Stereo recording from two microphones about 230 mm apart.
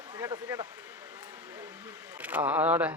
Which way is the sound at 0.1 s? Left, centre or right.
Centre.